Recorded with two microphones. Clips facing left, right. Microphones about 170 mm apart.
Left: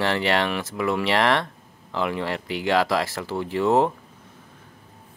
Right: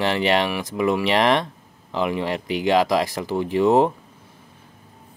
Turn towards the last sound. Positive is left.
turn(degrees=-15)  # may be behind; listen again after turning